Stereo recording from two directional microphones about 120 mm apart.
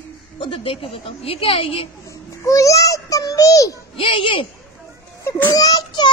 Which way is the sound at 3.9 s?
45° left (ahead or behind).